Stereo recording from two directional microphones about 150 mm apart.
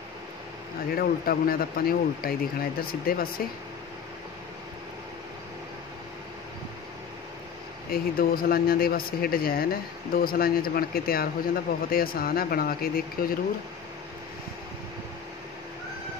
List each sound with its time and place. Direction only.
0.9 s speech: 75° left (ahead or behind)
7.9 s speech: 80° left